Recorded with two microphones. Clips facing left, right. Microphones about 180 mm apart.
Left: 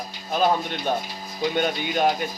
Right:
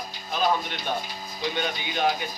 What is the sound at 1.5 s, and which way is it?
Speech, 45° left (ahead or behind).